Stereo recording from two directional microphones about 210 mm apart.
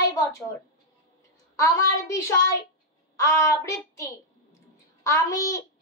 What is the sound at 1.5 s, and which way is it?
Speech, 15° left (ahead or behind).